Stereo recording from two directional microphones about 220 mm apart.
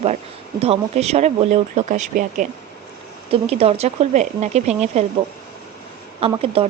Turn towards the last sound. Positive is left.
turn(degrees=-25)  # may be behind; listen again after turning